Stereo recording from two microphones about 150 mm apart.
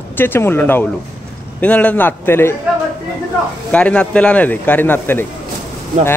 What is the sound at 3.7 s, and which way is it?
Speech, 5° left (ahead or behind).